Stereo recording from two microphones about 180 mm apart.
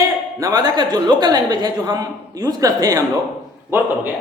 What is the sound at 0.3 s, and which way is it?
A woman's voice, 20° right (ahead or behind).